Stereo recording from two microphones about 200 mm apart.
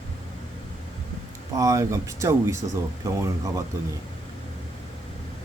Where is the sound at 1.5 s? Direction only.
15° right (ahead or behind).